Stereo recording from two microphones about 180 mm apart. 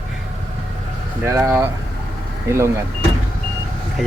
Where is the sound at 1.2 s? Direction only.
15° right (ahead or behind).